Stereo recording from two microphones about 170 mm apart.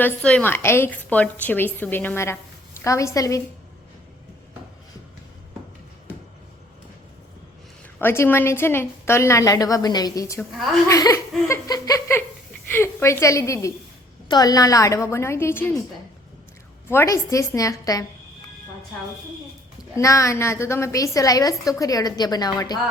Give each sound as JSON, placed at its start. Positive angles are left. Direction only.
{"t": 0.0, "sound": "a woman's voice", "side_deg": 5}
{"t": 7.9, "sound": "a woman's voice", "side_deg": 15}
{"t": 16.9, "sound": "a woman's voice", "side_deg": 15}
{"t": 20.0, "sound": "a woman's voice", "side_deg": 20}